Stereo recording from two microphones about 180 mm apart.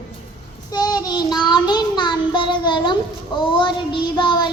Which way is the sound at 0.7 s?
25° left (ahead or behind).